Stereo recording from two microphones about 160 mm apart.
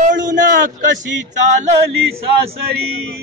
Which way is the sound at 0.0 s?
55° right (ahead or behind).